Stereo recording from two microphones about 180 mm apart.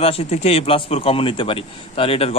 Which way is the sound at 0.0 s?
35° left (ahead or behind).